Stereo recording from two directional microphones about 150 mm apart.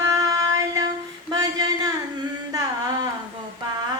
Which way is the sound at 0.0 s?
25° right (ahead or behind).